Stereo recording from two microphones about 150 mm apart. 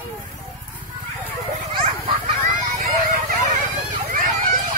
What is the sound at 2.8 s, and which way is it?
Vehicle, 55° right (ahead or behind).